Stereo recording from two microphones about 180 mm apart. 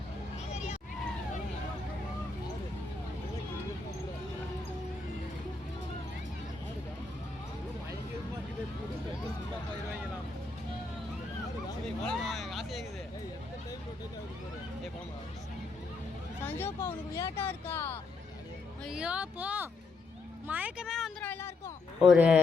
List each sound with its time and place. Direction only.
0.5 s vehicle: 35° left (ahead or behind)
12.0 s a sound: centre (ahead or behind)
16.5 s speech: 15° left (ahead or behind)
18.9 s speech: 5° right (ahead or behind)